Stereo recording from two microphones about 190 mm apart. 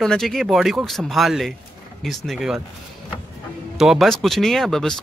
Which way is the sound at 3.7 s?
Centre (ahead or behind).